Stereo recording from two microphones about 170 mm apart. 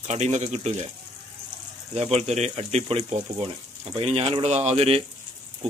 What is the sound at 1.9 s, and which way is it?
Speech, 40° right (ahead or behind).